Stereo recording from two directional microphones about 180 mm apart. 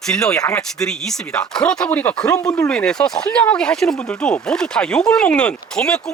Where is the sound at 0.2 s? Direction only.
5° left (ahead or behind).